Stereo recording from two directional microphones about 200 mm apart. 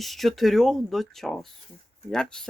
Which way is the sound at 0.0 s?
Centre (ahead or behind).